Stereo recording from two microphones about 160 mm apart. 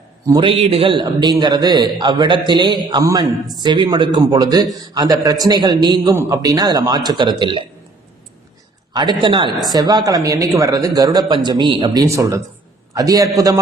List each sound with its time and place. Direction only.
0.3 s a man's voice: 35° right (ahead or behind)
8.9 s a man's voice: 25° right (ahead or behind)
12.0 s a man's voice: 20° right (ahead or behind)